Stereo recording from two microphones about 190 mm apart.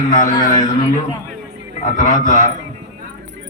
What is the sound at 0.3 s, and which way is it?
Speech, 20° left (ahead or behind).